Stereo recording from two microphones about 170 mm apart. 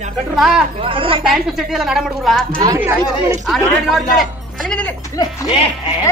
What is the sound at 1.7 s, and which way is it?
Speech, centre (ahead or behind).